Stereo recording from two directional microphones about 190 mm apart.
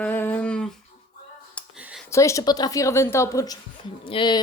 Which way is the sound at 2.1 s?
15° left (ahead or behind).